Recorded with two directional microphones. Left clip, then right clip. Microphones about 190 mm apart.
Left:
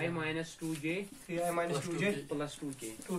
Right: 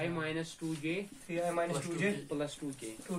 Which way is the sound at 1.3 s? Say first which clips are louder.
Even; 10° left (ahead or behind).